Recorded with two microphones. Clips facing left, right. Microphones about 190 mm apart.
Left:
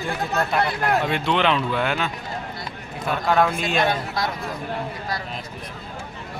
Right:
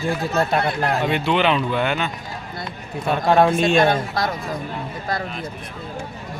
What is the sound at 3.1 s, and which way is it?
Speech, 25° right (ahead or behind).